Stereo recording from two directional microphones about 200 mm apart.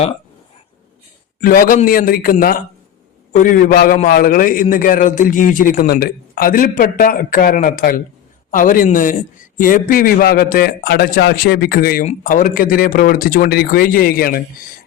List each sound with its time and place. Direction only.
1.4 s a man's voice: 45° left (ahead or behind)